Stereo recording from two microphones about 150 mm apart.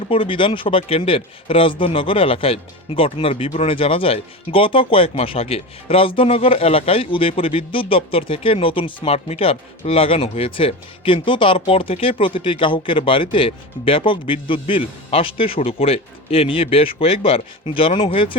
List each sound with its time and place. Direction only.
0.1 s speech: 35° left (ahead or behind)